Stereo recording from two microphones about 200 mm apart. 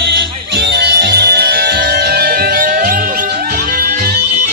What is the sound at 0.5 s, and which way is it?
Music, 55° right (ahead or behind).